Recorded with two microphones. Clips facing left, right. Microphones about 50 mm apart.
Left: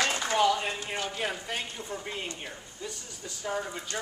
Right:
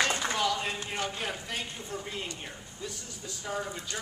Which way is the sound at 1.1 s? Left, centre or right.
Centre.